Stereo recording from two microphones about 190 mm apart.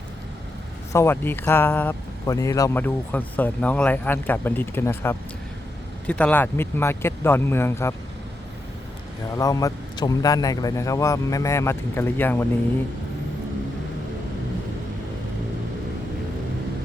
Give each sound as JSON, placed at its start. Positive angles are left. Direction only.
{"t": 0.9, "sound": "speech", "side_deg": 10}
{"t": 9.3, "sound": "speech", "side_deg": 20}